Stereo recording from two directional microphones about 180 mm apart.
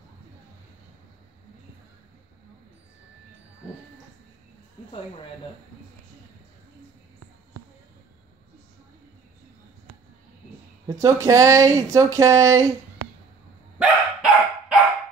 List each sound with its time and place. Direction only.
10.9 s speech: 15° right (ahead or behind)
13.7 s dog: centre (ahead or behind)